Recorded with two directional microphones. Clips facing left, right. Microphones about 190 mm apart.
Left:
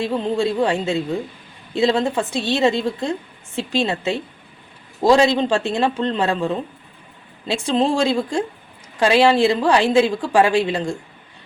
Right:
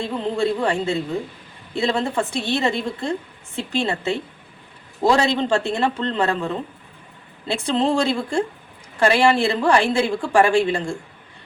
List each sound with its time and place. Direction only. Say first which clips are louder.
0.0 s a woman's voice: left 2 dB; 15° left (ahead or behind)